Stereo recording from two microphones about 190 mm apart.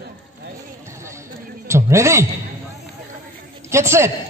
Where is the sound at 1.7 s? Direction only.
15° right (ahead or behind).